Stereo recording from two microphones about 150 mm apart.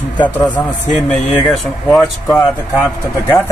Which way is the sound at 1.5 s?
Centre (ahead or behind).